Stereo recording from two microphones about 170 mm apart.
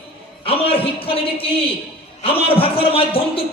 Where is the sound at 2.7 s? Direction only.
35° left (ahead or behind).